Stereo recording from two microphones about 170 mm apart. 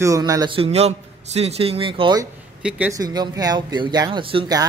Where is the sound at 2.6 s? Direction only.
5° right (ahead or behind).